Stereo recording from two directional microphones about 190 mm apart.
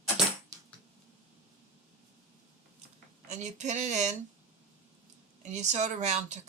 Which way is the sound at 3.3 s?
40° right (ahead or behind).